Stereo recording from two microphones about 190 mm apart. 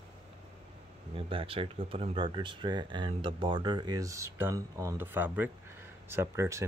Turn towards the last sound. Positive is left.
turn(degrees=-15)  # may be behind; listen again after turning